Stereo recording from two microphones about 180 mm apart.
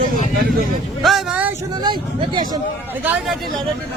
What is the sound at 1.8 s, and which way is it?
Speech, 25° right (ahead or behind).